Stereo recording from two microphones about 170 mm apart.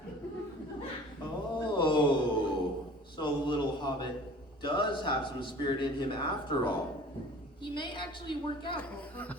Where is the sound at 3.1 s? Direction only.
25° left (ahead or behind).